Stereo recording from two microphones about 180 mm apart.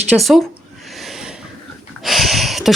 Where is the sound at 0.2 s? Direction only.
Centre (ahead or behind).